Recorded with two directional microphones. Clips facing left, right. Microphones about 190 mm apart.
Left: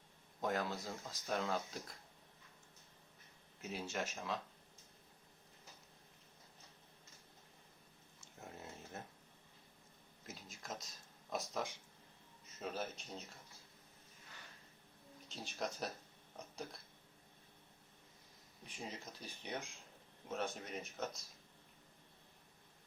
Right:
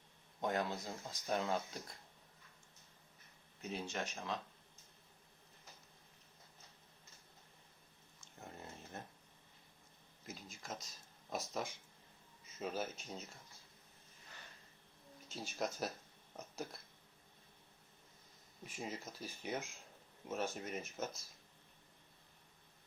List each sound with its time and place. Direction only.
0.4 s speech: centre (ahead or behind)
3.6 s speech: 5° left (ahead or behind)
8.2 s a sound: 5° left (ahead or behind)
10.2 s a sound: centre (ahead or behind)
12.5 s speech: centre (ahead or behind)
15.3 s speech: 5° right (ahead or behind)
18.6 s speech: 5° right (ahead or behind)